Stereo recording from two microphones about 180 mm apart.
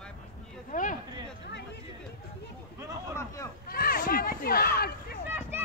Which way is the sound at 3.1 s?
15° left (ahead or behind).